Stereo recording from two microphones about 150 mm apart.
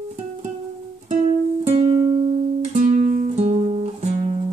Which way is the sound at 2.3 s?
50° right (ahead or behind).